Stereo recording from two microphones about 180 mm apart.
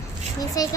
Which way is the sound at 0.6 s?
20° left (ahead or behind).